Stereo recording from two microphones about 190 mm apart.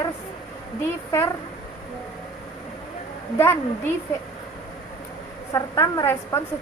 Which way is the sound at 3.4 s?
10° left (ahead or behind).